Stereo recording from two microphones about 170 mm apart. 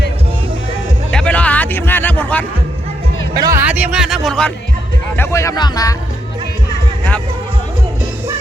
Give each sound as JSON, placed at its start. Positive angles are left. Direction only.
{"t": 1.1, "sound": "a sound", "side_deg": 5}
{"t": 3.3, "sound": "speech", "side_deg": -20}
{"t": 3.7, "sound": "a man's voice", "side_deg": -10}
{"t": 5.1, "sound": "speech", "side_deg": 15}